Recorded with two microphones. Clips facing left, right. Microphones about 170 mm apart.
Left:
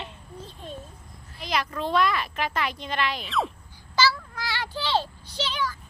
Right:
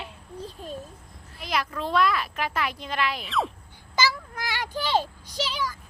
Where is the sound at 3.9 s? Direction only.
20° right (ahead or behind).